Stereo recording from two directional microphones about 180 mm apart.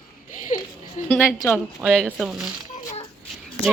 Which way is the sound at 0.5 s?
45° left (ahead or behind).